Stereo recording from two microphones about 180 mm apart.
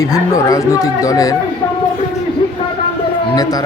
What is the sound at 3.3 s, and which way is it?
Speech, 20° left (ahead or behind).